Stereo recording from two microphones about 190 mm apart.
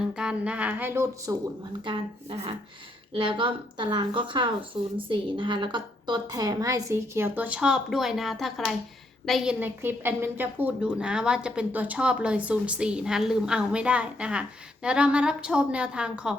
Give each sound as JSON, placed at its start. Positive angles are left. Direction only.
{"t": 0.1, "sound": "speech", "side_deg": -5}
{"t": 1.8, "sound": "a woman's voice", "side_deg": -30}